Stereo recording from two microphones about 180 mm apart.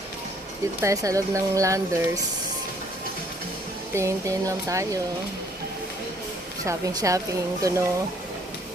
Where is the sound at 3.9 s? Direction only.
15° right (ahead or behind).